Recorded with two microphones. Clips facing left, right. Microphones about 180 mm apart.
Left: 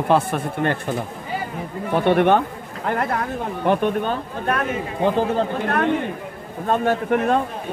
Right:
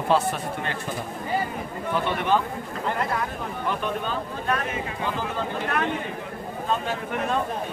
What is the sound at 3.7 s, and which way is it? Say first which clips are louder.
Speech: left 9 dB; 55° left (ahead or behind).